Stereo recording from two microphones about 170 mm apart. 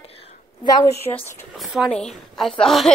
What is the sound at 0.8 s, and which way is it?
Speech, 15° left (ahead or behind).